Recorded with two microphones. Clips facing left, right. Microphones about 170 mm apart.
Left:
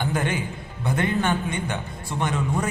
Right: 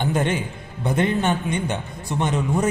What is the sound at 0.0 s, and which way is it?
A man's voice, 20° right (ahead or behind).